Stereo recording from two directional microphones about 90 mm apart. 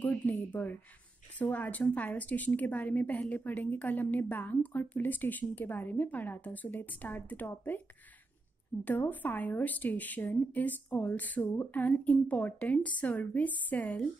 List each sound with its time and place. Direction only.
0.0 s a woman's voice: 20° left (ahead or behind)
8.8 s a woman's voice: 20° left (ahead or behind)